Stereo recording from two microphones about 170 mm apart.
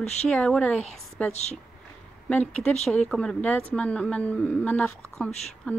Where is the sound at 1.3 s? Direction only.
40° left (ahead or behind).